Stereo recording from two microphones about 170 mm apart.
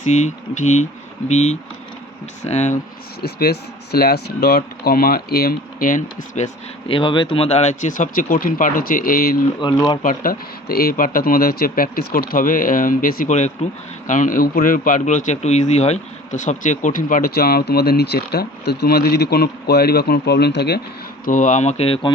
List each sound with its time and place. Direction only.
0.0 s speech: 45° left (ahead or behind)
3.2 s speech: 70° left (ahead or behind)
9.6 s speech: 25° left (ahead or behind)
10.0 s speech: 55° left (ahead or behind); by 20.8 s 75° left (ahead or behind)
21.2 s speech: 50° left (ahead or behind)